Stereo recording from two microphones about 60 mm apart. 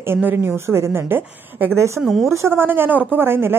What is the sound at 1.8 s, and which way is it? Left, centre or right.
Speech, right.